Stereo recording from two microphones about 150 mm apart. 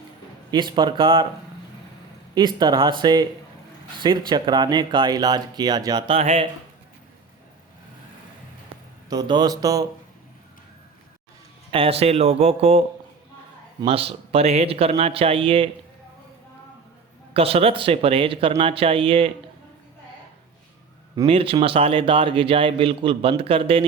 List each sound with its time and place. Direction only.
0.5 s a man's voice: 30° right (ahead or behind)
2.3 s speech: 30° right (ahead or behind)
6.1 s speech: 45° right (ahead or behind)
9.0 s speech: 30° right (ahead or behind)
11.7 s speech: 40° right (ahead or behind)
13.8 s a man's voice: 40° right (ahead or behind)
17.3 s a man's voice: 40° right (ahead or behind)
21.2 s a man's voice: 35° right (ahead or behind)